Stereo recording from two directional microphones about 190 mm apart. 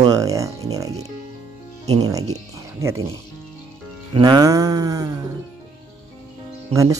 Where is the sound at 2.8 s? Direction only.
15° right (ahead or behind).